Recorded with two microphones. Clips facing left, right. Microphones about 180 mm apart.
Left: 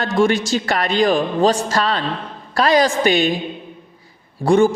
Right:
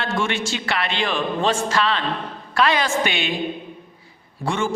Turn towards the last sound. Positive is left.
turn(degrees=40)  # may be behind; listen again after turning